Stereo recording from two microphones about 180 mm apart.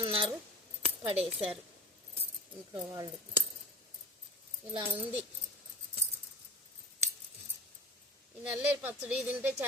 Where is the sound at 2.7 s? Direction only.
20° right (ahead or behind).